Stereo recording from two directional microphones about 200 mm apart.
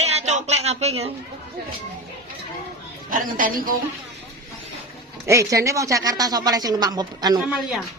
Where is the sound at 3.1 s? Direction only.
45° right (ahead or behind).